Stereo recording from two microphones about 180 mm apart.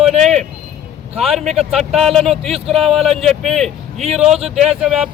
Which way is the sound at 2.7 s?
35° right (ahead or behind).